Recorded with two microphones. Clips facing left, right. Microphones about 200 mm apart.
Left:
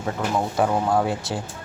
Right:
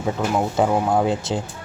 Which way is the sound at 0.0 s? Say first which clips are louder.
Right 3 dB; 20° right (ahead or behind).